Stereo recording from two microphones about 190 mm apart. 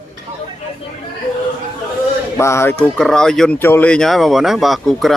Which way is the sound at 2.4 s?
15° left (ahead or behind).